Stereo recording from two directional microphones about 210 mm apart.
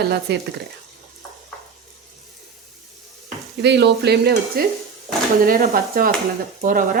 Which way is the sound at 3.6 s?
55° right (ahead or behind).